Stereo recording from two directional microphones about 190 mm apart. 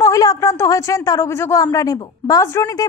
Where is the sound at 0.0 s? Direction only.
20° left (ahead or behind).